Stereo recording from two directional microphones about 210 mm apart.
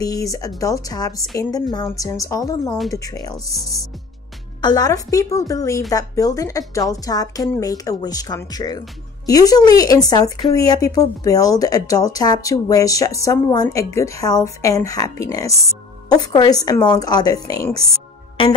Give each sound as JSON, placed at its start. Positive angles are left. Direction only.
{"t": 0.0, "sound": "a woman's voice", "side_deg": 15}
{"t": 4.6, "sound": "a woman's voice", "side_deg": 20}